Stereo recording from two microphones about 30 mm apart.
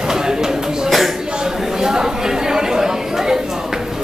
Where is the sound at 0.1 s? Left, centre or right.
Centre.